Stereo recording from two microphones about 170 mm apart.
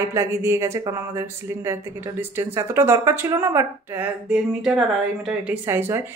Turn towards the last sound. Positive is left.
turn(degrees=-15)  # may be behind; listen again after turning